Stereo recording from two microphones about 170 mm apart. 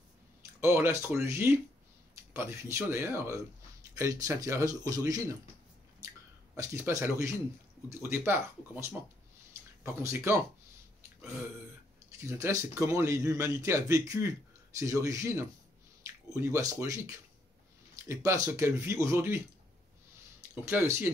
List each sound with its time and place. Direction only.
0.6 s a man's voice: 15° right (ahead or behind)
6.5 s a man's voice: 15° right (ahead or behind)
10.0 s a man's voice: 15° right (ahead or behind)
12.2 s a man's voice: 15° right (ahead or behind)
20.6 s a man's voice: 15° right (ahead or behind)